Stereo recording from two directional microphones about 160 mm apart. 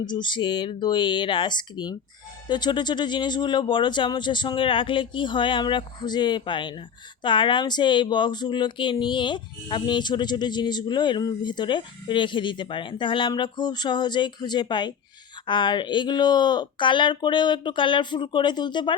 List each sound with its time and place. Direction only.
0.0 s speech: 30° left (ahead or behind)